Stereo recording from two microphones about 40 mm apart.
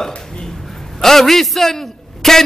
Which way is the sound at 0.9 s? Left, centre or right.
Centre.